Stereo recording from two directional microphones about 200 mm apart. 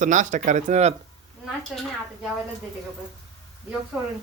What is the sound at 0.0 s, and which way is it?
Speech, 40° right (ahead or behind).